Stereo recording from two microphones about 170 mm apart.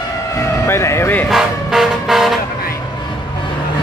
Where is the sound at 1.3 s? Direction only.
Centre (ahead or behind).